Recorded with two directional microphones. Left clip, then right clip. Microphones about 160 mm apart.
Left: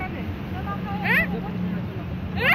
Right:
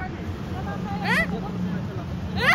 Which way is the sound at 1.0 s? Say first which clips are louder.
Left 2 dB; 55° right (ahead or behind).